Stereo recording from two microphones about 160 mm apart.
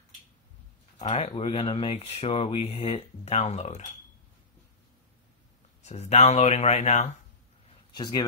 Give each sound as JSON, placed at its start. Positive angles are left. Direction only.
{"t": 0.9, "sound": "speech", "side_deg": 40}
{"t": 5.8, "sound": "speech", "side_deg": 45}
{"t": 7.9, "sound": "speech", "side_deg": 25}